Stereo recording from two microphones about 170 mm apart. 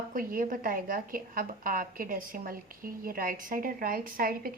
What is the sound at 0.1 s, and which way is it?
A woman's voice, 55° right (ahead or behind).